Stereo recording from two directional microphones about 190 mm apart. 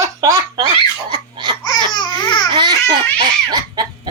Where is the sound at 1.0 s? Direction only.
25° right (ahead or behind).